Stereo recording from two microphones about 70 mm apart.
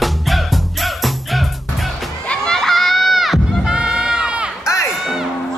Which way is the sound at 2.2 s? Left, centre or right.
Centre.